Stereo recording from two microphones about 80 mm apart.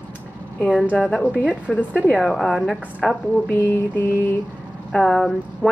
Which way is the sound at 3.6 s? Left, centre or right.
Left.